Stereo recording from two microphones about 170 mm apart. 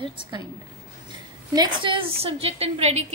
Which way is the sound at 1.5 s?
25° right (ahead or behind).